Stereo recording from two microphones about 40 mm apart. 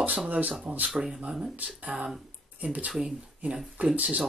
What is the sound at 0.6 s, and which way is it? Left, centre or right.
Speech, right.